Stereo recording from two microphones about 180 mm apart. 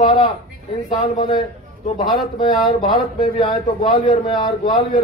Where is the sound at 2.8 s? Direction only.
35° left (ahead or behind).